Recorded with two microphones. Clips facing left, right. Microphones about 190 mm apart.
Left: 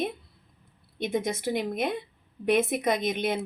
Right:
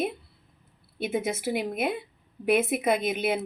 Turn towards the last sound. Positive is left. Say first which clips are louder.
# right 1 dB
turn(degrees=-5)  # may be behind; listen again after turning